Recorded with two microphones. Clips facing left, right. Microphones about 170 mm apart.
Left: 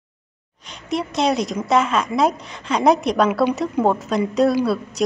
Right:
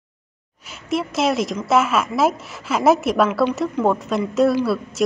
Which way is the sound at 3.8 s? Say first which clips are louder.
Even; centre (ahead or behind).